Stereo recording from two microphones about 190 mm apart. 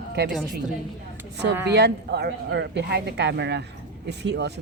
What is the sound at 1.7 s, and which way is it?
A woman's voice, 60° right (ahead or behind).